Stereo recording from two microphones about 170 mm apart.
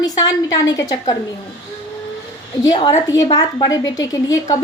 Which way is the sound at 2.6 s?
25° left (ahead or behind).